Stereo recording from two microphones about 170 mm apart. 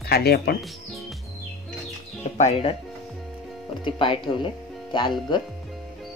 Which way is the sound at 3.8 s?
30° left (ahead or behind).